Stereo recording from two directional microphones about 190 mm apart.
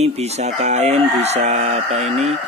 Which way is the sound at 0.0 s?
35° right (ahead or behind).